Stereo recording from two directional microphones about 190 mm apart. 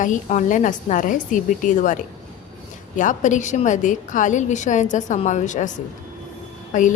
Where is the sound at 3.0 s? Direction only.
40° left (ahead or behind).